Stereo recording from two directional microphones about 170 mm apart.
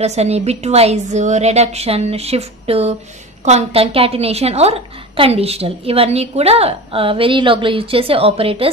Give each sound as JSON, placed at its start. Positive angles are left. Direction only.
{"t": 0.0, "sound": "a woman's voice", "side_deg": -40}